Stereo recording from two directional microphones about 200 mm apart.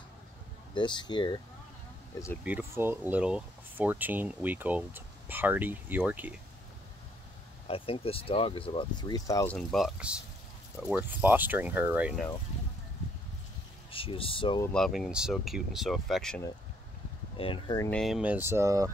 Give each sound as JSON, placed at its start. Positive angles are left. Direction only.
{"t": 0.7, "sound": "speech", "side_deg": 25}
{"t": 2.4, "sound": "speech", "side_deg": -10}
{"t": 7.6, "sound": "speech", "side_deg": 30}
{"t": 9.6, "sound": "speech", "side_deg": 0}
{"t": 13.9, "sound": "speech", "side_deg": 25}
{"t": 14.7, "sound": "speech", "side_deg": 0}
{"t": 17.4, "sound": "speech", "side_deg": 25}
{"t": 17.8, "sound": "speech", "side_deg": 0}